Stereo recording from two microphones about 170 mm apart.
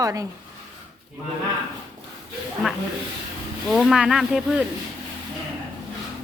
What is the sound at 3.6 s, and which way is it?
Speech, centre (ahead or behind).